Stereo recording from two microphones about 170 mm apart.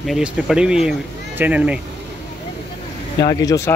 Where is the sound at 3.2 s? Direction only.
20° left (ahead or behind).